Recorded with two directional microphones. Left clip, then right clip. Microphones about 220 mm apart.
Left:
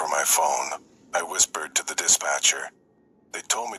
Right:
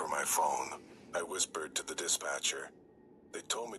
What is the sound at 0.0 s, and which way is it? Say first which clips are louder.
Speech: left 10 dB; 35° left (ahead or behind).